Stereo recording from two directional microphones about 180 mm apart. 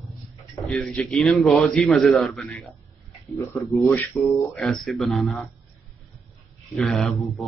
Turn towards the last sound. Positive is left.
turn(degrees=0)  # may be behind; listen again after turning